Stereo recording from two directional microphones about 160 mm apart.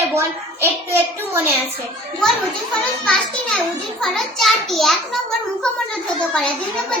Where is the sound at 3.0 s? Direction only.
5° left (ahead or behind).